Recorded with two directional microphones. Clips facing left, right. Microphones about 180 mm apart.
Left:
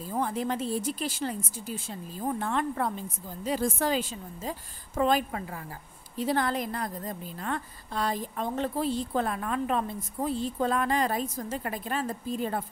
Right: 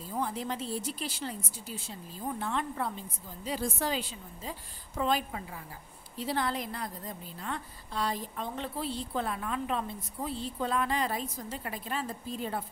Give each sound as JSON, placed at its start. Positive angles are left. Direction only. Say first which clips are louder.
{"t": 0.1, "sound": "a woman's voice", "louder": "left 4 dB", "side_deg": 55}